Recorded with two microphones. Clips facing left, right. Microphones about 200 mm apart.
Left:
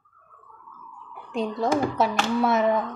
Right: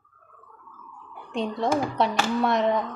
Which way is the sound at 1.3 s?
Centre (ahead or behind).